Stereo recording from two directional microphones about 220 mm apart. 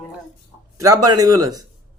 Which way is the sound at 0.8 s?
15° right (ahead or behind).